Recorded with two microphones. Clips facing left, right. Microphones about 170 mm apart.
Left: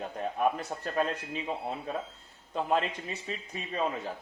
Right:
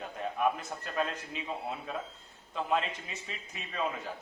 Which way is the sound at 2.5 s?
40° left (ahead or behind).